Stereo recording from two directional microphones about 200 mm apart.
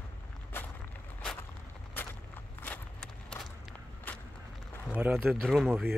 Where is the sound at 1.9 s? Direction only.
10° left (ahead or behind).